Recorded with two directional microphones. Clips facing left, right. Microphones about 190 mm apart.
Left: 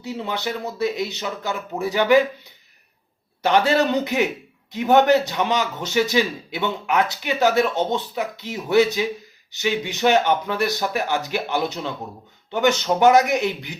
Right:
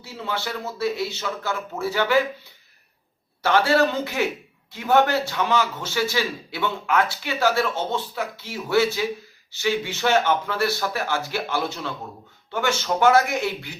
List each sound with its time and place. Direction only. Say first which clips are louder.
0.0 s a man's voice: left 3 dB; 20° left (ahead or behind)